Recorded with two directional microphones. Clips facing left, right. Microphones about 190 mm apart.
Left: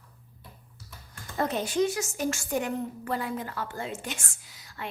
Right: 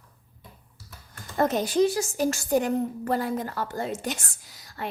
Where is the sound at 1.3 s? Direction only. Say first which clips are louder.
Right 4 dB; 40° right (ahead or behind).